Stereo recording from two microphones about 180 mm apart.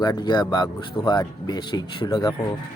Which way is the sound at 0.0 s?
20° left (ahead or behind).